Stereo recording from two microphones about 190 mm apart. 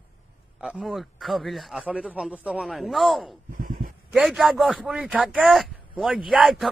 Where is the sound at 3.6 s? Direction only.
45° right (ahead or behind).